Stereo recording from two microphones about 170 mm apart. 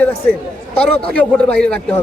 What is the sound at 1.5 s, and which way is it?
Speech, 5° left (ahead or behind).